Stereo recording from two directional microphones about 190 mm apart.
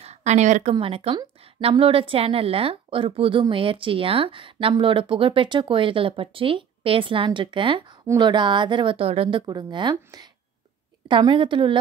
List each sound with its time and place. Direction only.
0.0 s a woman's voice: 35° right (ahead or behind)